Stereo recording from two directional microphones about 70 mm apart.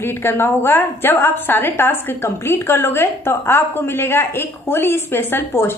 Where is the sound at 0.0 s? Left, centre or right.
Left.